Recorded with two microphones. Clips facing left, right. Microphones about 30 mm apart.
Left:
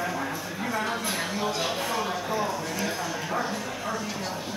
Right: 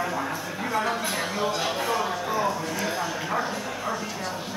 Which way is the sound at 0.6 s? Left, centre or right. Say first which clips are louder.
Right 3 dB; centre.